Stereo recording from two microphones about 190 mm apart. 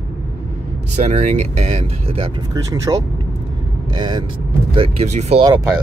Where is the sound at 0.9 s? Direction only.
40° right (ahead or behind).